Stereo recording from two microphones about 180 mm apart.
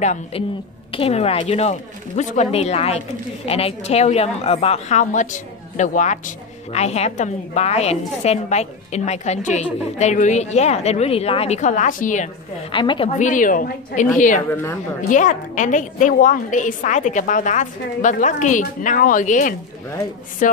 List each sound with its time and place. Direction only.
0.0 s a woman's voice: 40° left (ahead or behind)
12.7 s a woman's voice: 25° left (ahead or behind)
13.2 s a woman's voice: 45° left (ahead or behind)
14.5 s a woman's voice: 10° left (ahead or behind)
15.0 s a woman's voice: 45° left (ahead or behind)